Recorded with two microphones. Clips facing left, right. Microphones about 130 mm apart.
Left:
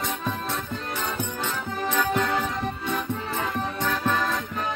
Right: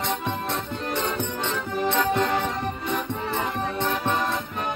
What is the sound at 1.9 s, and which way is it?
Music, 20° right (ahead or behind).